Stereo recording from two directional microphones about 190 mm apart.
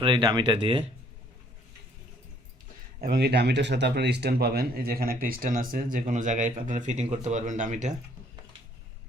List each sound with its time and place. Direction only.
0.0 s speech: 25° right (ahead or behind)
3.0 s speech: 55° right (ahead or behind); by 7.9 s 40° right (ahead or behind)